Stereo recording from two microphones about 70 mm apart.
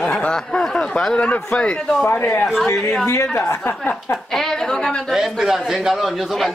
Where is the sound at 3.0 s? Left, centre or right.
Left.